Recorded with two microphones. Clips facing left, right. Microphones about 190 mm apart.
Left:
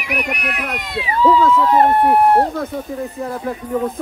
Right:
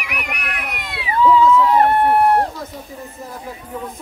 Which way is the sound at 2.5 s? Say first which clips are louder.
Left 8 dB; 60° left (ahead or behind).